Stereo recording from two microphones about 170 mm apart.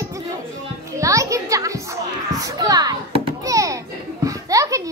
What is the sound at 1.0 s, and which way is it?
Children playing, 20° right (ahead or behind).